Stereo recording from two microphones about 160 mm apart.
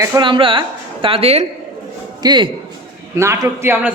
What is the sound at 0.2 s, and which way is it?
Speech, 30° right (ahead or behind).